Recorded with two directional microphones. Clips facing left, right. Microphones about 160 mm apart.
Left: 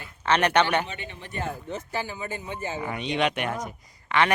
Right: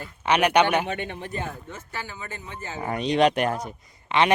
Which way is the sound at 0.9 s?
55° right (ahead or behind).